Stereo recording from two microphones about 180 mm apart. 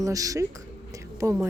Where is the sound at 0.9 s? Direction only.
15° right (ahead or behind).